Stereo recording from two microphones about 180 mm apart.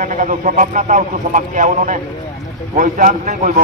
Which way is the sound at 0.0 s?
45° right (ahead or behind).